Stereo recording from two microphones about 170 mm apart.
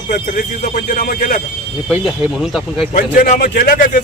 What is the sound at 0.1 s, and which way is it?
A man's voice, 50° left (ahead or behind).